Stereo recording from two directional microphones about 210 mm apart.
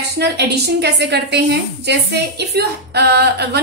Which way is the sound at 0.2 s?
50° right (ahead or behind).